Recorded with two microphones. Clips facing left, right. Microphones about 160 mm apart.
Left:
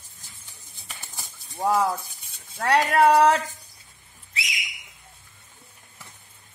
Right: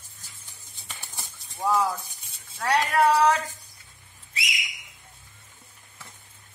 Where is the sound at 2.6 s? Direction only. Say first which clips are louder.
Left 3 dB; 50° left (ahead or behind).